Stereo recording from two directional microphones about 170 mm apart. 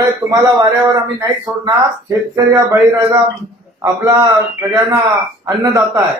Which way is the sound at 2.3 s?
15° right (ahead or behind).